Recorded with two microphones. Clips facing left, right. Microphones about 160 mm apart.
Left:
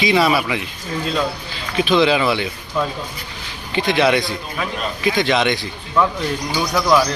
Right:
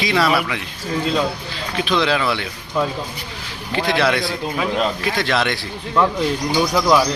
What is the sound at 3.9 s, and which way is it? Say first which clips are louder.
A man's voice: left 3 dB; centre (ahead or behind).